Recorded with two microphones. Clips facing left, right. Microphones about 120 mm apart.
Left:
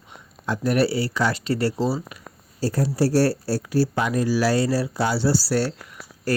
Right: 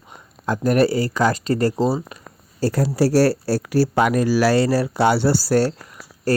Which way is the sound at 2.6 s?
90° right.